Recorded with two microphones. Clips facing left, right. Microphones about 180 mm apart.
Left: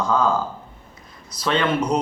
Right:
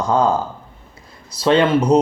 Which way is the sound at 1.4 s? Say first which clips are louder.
Right 6 dB; 30° right (ahead or behind).